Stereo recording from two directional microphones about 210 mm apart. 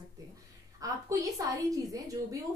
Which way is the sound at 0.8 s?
15° right (ahead or behind).